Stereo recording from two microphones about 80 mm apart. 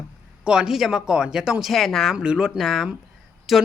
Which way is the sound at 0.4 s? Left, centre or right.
Centre.